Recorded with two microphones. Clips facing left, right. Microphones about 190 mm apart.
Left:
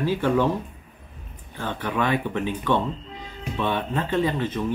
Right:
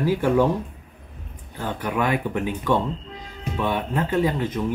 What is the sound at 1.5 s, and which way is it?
Speech, 10° right (ahead or behind).